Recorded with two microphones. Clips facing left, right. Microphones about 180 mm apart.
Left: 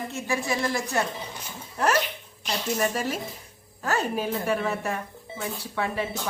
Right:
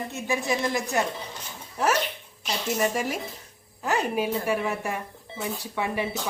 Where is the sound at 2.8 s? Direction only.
15° right (ahead or behind).